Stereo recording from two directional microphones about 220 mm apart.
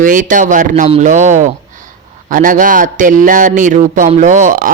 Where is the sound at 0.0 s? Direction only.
35° right (ahead or behind).